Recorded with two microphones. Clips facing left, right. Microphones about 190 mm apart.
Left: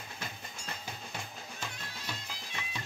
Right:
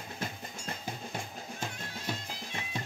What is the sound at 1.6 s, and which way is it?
Music, 50° right (ahead or behind).